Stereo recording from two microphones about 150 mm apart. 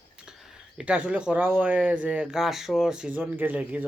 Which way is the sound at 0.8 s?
5° right (ahead or behind).